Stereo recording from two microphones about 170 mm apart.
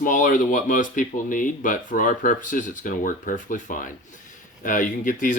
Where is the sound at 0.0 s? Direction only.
55° left (ahead or behind).